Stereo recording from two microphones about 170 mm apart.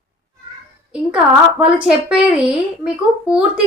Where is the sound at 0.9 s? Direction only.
5° right (ahead or behind).